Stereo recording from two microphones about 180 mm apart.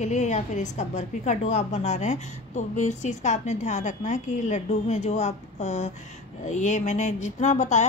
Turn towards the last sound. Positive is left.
turn(degrees=40)  # may be behind; listen again after turning